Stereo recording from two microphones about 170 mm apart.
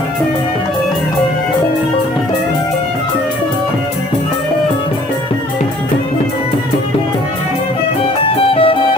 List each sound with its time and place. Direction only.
8.2 s music: 35° left (ahead or behind)